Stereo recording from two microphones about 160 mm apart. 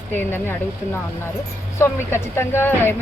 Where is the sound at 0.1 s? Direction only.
10° left (ahead or behind).